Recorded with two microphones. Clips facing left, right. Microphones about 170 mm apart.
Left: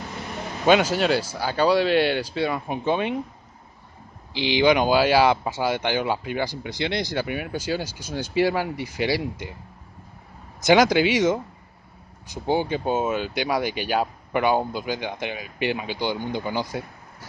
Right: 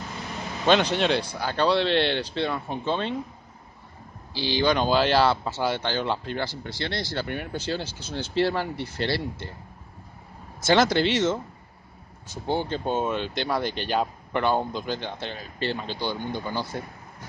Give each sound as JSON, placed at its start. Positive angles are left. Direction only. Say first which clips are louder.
{"t": 0.7, "sound": "speech", "louder": "left 2 dB", "side_deg": 5}
{"t": 4.3, "sound": "speech", "louder": "left 4 dB", "side_deg": 15}
{"t": 7.2, "sound": "speech", "louder": "left 3 dB", "side_deg": 5}
{"t": 10.6, "sound": "speech", "louder": "left 3 dB", "side_deg": 15}